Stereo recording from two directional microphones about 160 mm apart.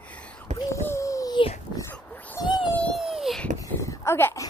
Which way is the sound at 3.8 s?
15° left (ahead or behind).